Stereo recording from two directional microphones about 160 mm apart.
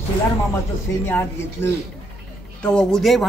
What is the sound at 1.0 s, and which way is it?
A man's voice, 15° left (ahead or behind).